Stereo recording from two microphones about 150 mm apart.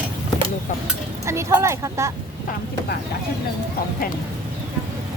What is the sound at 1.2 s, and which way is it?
Speech, 20° right (ahead or behind).